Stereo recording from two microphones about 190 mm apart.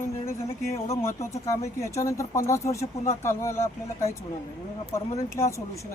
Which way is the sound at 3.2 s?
15° left (ahead or behind).